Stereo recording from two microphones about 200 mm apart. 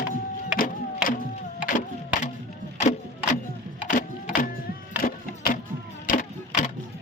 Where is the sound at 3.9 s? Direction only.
45° left (ahead or behind).